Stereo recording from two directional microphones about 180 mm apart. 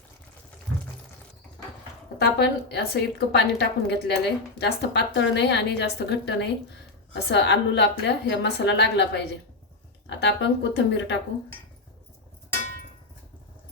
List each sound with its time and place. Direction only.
2.2 s a woman's voice: 65° left (ahead or behind)